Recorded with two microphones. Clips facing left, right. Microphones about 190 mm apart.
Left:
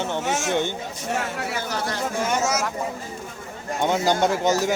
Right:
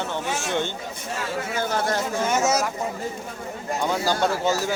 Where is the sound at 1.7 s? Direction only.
50° right (ahead or behind).